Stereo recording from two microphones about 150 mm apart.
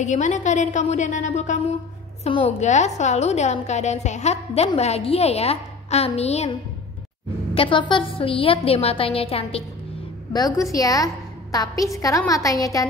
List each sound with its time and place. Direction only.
0.0 s a woman's voice: 55° left (ahead or behind)
2.2 s a woman's voice: 40° left (ahead or behind)
7.5 s a woman's voice: 35° left (ahead or behind)
10.3 s a woman's voice: 25° left (ahead or behind)